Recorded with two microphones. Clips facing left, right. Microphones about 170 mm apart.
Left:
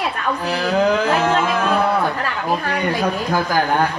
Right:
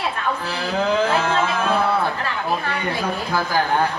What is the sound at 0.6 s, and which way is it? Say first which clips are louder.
Speech: left 3 dB; 40° left (ahead or behind).